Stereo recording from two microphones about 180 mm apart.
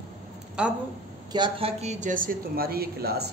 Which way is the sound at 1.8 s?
40° right (ahead or behind).